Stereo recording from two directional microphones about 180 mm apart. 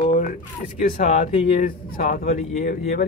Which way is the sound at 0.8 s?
45° left (ahead or behind).